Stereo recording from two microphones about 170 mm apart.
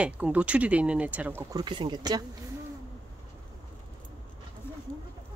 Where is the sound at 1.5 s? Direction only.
25° right (ahead or behind).